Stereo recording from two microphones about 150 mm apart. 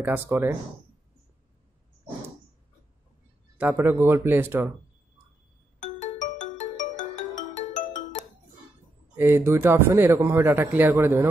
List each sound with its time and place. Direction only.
0.0 s speech: 10° right (ahead or behind)
3.5 s speech: 15° right (ahead or behind)
5.8 s music: 55° left (ahead or behind)
9.1 s speech: 15° right (ahead or behind)